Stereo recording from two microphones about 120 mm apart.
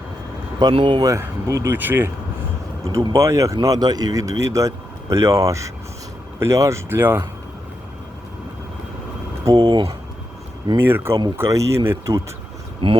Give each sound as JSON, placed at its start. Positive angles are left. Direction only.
{"t": 0.7, "sound": "speech", "side_deg": -45}
{"t": 1.1, "sound": "speech", "side_deg": -25}
{"t": 3.2, "sound": "speech", "side_deg": -25}
{"t": 9.6, "sound": "speech", "side_deg": -45}
{"t": 10.8, "sound": "speech", "side_deg": -20}
{"t": 12.8, "sound": "speech", "side_deg": -50}